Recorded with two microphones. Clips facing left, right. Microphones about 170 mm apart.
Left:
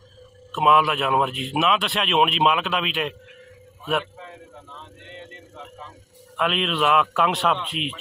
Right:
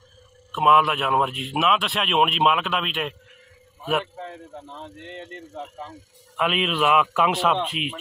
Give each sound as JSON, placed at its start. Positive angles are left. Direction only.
{"t": 0.5, "sound": "speech", "side_deg": 0}
{"t": 5.3, "sound": "a man's voice", "side_deg": -45}
{"t": 6.3, "sound": "speech", "side_deg": 0}